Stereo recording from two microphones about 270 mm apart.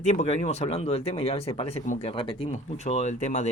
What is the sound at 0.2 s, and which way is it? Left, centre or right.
Speech, left.